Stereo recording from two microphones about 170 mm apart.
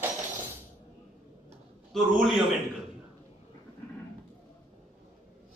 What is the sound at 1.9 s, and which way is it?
Speech, centre (ahead or behind).